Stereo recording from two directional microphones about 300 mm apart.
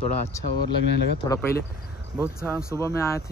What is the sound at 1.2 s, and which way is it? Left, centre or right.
Speech, centre.